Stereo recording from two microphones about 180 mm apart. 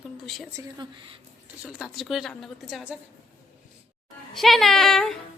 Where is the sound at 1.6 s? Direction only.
Centre (ahead or behind).